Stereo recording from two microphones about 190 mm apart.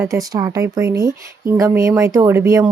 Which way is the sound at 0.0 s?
15° right (ahead or behind).